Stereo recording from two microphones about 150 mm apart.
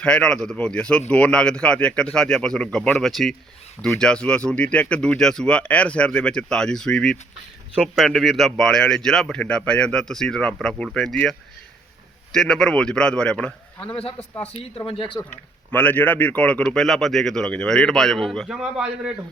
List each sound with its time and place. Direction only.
0.0 s speech: 5° left (ahead or behind)
14.8 s speech: 35° left (ahead or behind)
15.7 s speech: 10° left (ahead or behind); by 19.1 s 5° right (ahead or behind)